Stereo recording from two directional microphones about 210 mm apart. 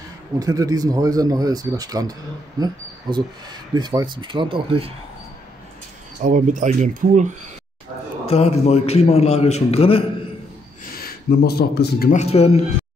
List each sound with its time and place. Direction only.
0.4 s speech: 15° right (ahead or behind)
6.2 s speech: 35° right (ahead or behind)
8.3 s a man's voice: 30° left (ahead or behind)
11.0 s speech: 45° left (ahead or behind)
12.1 s a man's voice: 30° left (ahead or behind)